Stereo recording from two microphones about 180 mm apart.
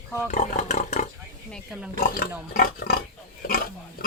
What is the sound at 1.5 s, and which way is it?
Pig, 5° right (ahead or behind).